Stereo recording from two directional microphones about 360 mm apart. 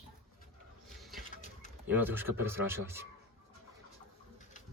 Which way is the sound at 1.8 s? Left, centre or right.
Centre.